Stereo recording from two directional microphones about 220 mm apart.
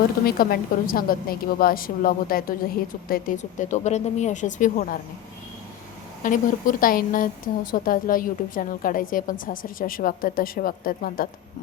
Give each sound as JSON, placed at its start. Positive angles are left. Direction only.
{"t": 0.3, "sound": "a woman's voice", "side_deg": 40}
{"t": 6.2, "sound": "a woman's voice", "side_deg": 35}